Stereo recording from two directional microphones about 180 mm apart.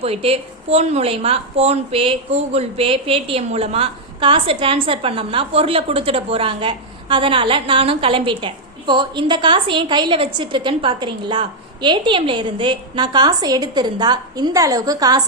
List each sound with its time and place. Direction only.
0.0 s speech: 35° right (ahead or behind)